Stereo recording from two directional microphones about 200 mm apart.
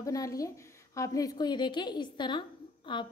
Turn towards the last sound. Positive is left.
turn(degrees=25)  # may be behind; listen again after turning